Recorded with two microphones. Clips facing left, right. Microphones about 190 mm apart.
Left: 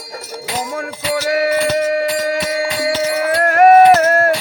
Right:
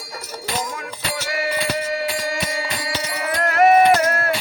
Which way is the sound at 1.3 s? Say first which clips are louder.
Left 8 dB; 55° left (ahead or behind).